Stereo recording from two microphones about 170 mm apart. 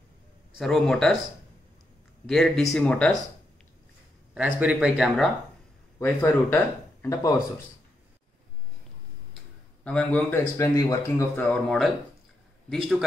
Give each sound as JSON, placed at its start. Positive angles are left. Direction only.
{"t": 0.6, "sound": "speech", "side_deg": 0}
{"t": 2.2, "sound": "speech", "side_deg": 0}
{"t": 4.3, "sound": "speech", "side_deg": -10}
{"t": 5.9, "sound": "speech", "side_deg": 10}
{"t": 9.8, "sound": "speech", "side_deg": 5}
{"t": 11.4, "sound": "speech", "side_deg": 5}